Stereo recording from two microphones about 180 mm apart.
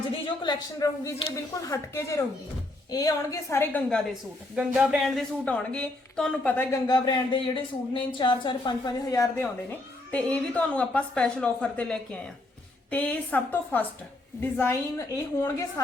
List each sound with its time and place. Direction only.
0.3 s speech: 20° left (ahead or behind)
4.5 s speech: 5° right (ahead or behind); by 15.6 s 20° left (ahead or behind)